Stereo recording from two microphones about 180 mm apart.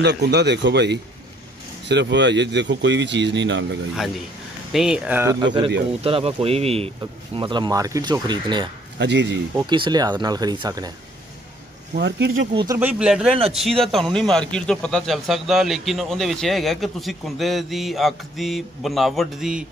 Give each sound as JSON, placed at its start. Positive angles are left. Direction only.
{"t": 0.0, "sound": "speech", "side_deg": -70}
{"t": 4.7, "sound": "speech", "side_deg": -5}
{"t": 8.9, "sound": "speech", "side_deg": -75}
{"t": 9.6, "sound": "speech", "side_deg": -25}
{"t": 11.9, "sound": "speech", "side_deg": -75}
{"t": 12.7, "sound": "a man's voice", "side_deg": -5}